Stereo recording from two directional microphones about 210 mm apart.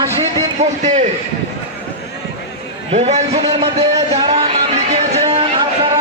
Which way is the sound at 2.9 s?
30° right (ahead or behind).